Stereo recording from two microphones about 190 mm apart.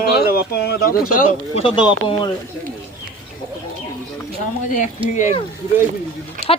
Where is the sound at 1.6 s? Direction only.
25° left (ahead or behind).